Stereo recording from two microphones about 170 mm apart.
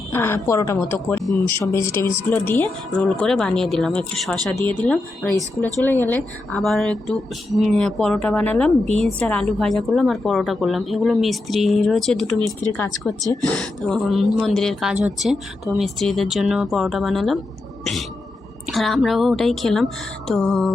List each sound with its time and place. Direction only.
0.1 s a woman's voice: 15° left (ahead or behind)
18.7 s a woman's voice: centre (ahead or behind)